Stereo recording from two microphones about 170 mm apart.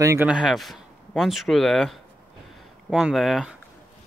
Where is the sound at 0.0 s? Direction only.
15° right (ahead or behind).